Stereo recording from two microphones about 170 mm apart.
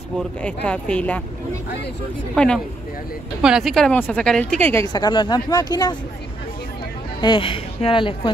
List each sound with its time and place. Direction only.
0.7 s speech: 5° left (ahead or behind)
2.3 s a woman's voice: 5° left (ahead or behind)
4.9 s speech: 25° left (ahead or behind)
7.2 s speech: 30° left (ahead or behind)